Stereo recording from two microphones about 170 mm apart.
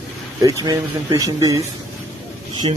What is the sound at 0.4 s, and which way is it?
Speech, 20° right (ahead or behind).